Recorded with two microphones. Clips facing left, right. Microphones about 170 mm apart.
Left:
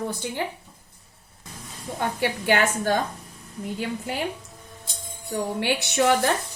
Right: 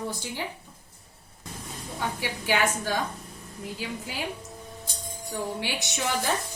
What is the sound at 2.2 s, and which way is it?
A woman's voice, 55° left (ahead or behind).